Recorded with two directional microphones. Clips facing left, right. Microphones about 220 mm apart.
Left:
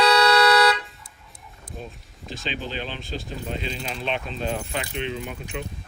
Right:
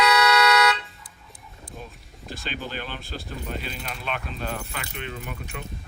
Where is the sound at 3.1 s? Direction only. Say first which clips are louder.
Left 2 dB; centre (ahead or behind).